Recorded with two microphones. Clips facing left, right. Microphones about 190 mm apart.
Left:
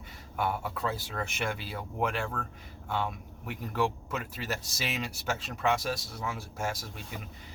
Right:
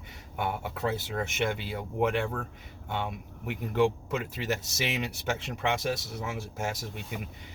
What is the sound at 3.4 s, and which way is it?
Speech, 25° right (ahead or behind).